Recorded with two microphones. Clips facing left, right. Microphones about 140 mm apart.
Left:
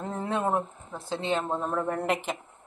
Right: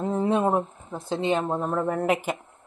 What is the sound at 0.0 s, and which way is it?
A woman's voice, 15° right (ahead or behind).